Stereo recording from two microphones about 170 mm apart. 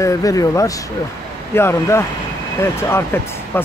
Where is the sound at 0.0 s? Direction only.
20° left (ahead or behind).